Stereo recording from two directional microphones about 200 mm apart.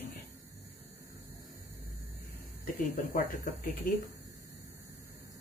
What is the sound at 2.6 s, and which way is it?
Speech, 40° left (ahead or behind).